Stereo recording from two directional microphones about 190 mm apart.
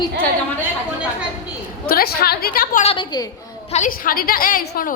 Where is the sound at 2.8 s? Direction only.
30° left (ahead or behind).